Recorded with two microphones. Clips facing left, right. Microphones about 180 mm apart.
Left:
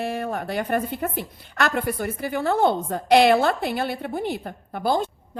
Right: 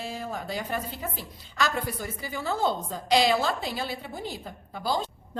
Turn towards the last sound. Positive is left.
turn(degrees=55)  # may be behind; listen again after turning